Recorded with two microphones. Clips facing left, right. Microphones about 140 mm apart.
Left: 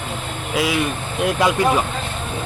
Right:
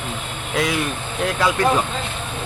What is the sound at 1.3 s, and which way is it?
Speech, 15° left (ahead or behind).